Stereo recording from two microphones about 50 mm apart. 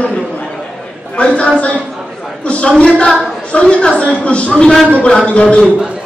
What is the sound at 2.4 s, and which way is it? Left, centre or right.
A woman's voice, left.